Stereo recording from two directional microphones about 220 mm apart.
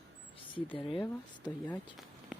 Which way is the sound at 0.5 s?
25° left (ahead or behind).